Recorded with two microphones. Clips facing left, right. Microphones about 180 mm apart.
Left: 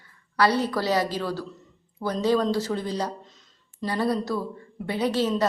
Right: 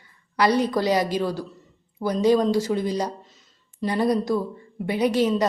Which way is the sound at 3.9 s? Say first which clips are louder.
Right 4 dB; 15° right (ahead or behind).